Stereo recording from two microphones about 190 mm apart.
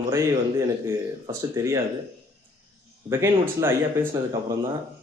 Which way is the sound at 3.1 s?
15° right (ahead or behind).